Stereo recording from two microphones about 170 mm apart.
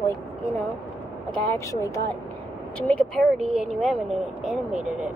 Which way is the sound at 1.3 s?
15° left (ahead or behind).